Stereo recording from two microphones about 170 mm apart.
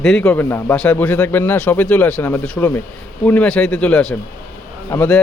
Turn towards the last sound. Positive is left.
turn(degrees=10)  # may be behind; listen again after turning